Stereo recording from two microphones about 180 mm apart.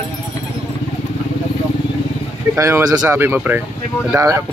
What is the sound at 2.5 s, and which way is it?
Speech, 15° right (ahead or behind).